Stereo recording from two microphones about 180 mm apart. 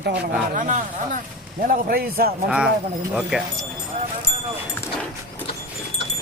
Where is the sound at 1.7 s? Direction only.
55° right (ahead or behind).